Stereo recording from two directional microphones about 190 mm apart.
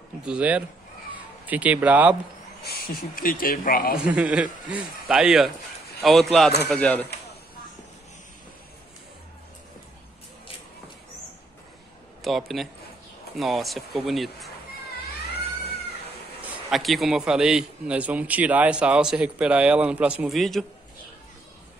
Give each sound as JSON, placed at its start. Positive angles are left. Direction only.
{"t": 0.2, "sound": "speech", "side_deg": -5}
{"t": 2.6, "sound": "owl", "side_deg": 55}
{"t": 3.2, "sound": "a man's voice", "side_deg": 45}
{"t": 4.0, "sound": "a man's voice", "side_deg": -5}
{"t": 12.2, "sound": "a man's voice", "side_deg": 0}
{"t": 16.3, "sound": "a man's voice", "side_deg": 0}